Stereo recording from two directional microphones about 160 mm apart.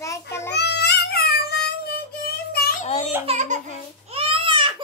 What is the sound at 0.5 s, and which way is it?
Child singing, 90° left.